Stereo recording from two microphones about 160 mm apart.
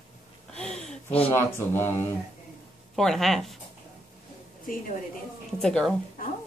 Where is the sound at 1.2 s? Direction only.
15° left (ahead or behind).